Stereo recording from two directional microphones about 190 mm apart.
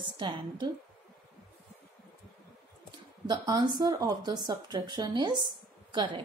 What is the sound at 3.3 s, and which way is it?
Speech, 25° right (ahead or behind).